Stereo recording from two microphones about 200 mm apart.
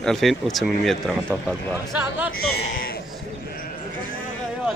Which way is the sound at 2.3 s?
50° left (ahead or behind).